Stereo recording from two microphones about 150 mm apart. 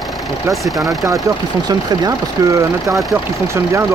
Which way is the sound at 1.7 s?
25° right (ahead or behind).